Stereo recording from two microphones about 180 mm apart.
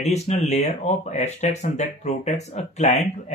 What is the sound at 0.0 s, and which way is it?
Speech, 35° left (ahead or behind).